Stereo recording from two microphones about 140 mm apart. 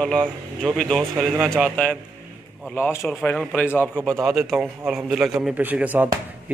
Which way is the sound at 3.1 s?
5° left (ahead or behind).